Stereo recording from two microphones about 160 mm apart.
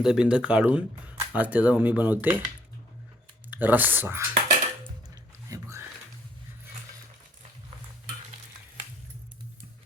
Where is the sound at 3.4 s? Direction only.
10° right (ahead or behind).